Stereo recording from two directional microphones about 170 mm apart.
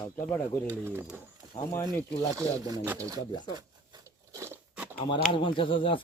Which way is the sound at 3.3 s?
25° left (ahead or behind).